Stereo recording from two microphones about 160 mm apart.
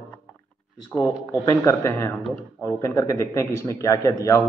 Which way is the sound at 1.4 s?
20° left (ahead or behind).